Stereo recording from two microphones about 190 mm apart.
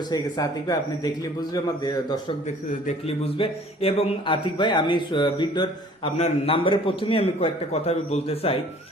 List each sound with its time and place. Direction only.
0.1 s a man's voice: 20° left (ahead or behind)